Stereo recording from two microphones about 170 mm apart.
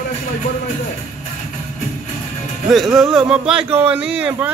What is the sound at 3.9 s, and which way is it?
Speech, 5° right (ahead or behind).